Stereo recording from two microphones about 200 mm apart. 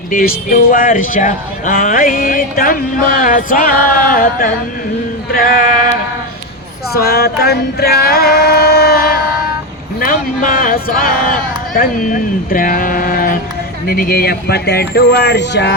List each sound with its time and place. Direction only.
0.1 s speech: 45° left (ahead or behind)
6.9 s female singing: 50° left (ahead or behind)
10.0 s speech: 45° left (ahead or behind); by 15.7 s 60° left (ahead or behind)